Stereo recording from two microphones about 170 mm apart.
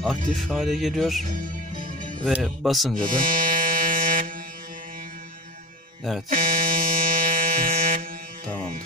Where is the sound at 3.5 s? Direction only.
55° right (ahead or behind).